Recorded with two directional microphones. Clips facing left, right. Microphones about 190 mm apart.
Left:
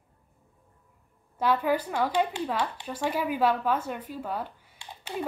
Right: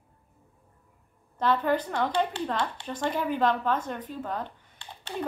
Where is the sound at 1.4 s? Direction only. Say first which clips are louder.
Even; 10° left (ahead or behind).